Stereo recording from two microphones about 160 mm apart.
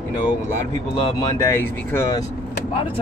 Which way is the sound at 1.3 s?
15° left (ahead or behind).